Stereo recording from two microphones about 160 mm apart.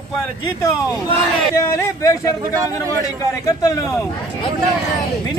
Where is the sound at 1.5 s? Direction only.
15° left (ahead or behind).